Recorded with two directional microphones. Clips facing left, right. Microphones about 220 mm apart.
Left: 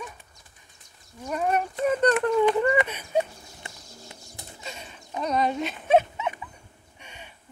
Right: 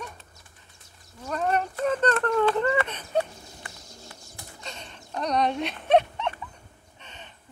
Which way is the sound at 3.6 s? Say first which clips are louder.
Left 1 dB; 20° left (ahead or behind).